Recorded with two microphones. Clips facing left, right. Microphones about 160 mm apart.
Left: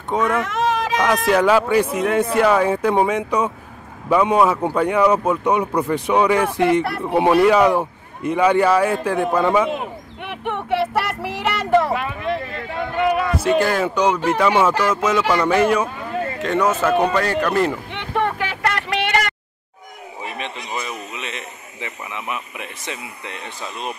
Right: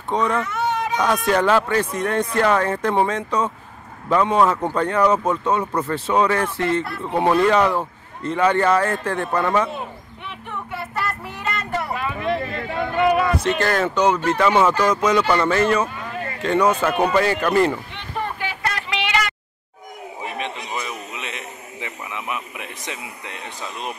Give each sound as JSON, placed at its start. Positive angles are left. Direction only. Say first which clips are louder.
{"t": 0.1, "sound": "speech", "louder": "left 1 dB", "side_deg": 5}
{"t": 0.4, "sound": "a sound", "louder": "left 3 dB", "side_deg": 90}
{"t": 1.0, "sound": "speech", "louder": "left 2 dB", "side_deg": 0}
{"t": 9.7, "sound": "child singing", "louder": "left 5 dB", "side_deg": 80}
{"t": 13.4, "sound": "speech", "louder": "left 3 dB", "side_deg": 10}
{"t": 16.8, "sound": "speech", "louder": "left 1 dB", "side_deg": -15}
{"t": 17.2, "sound": "speech", "louder": "right 1 dB", "side_deg": -5}
{"t": 17.9, "sound": "vehicle", "louder": "left 6 dB", "side_deg": 80}
{"t": 20.3, "sound": "a sound", "louder": "even", "side_deg": -10}